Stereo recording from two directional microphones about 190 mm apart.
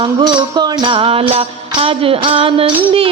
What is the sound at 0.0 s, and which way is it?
Music, 25° right (ahead or behind).